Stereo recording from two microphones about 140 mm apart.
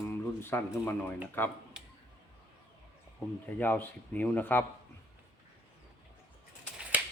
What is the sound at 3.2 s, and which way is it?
A man's voice, 10° left (ahead or behind).